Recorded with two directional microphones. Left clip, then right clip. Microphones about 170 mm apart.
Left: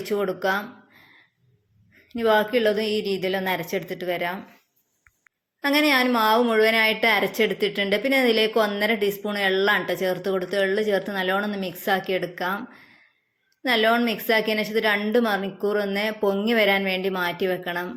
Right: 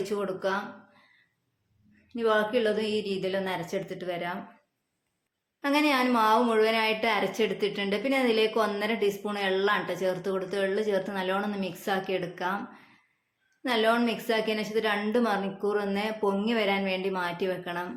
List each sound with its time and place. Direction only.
0.1 s a woman's voice: 30° left (ahead or behind)
2.0 s a woman's voice: 30° left (ahead or behind)
5.6 s a woman's voice: 25° left (ahead or behind)
13.6 s a woman's voice: 25° left (ahead or behind)